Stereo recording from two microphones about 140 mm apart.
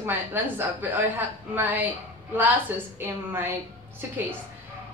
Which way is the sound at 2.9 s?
15° right (ahead or behind).